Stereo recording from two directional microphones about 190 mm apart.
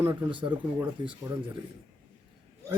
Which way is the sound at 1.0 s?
25° right (ahead or behind).